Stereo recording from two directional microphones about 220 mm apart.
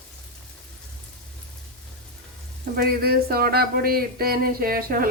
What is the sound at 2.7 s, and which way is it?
Speech, 45° right (ahead or behind).